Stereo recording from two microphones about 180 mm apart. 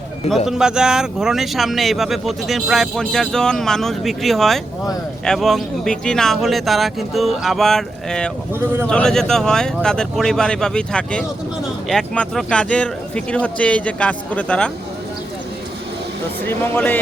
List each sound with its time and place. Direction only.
0.4 s speech: 5° right (ahead or behind)
16.5 s speech: 10° left (ahead or behind)